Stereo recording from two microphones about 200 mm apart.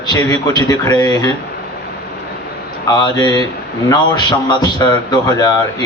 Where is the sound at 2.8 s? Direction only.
20° left (ahead or behind).